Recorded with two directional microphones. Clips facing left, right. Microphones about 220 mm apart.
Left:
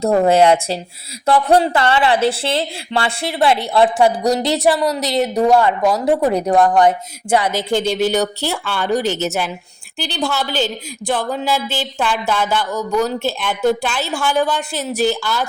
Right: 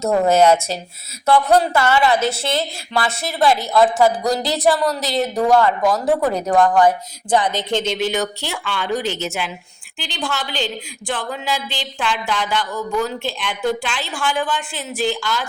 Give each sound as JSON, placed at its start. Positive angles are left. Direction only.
{"t": 0.0, "sound": "a woman's voice", "side_deg": 30}
{"t": 7.3, "sound": "a sound", "side_deg": 10}
{"t": 7.9, "sound": "a woman's voice", "side_deg": 40}